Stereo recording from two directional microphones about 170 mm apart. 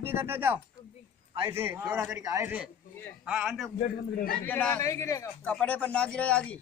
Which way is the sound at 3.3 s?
Centre (ahead or behind).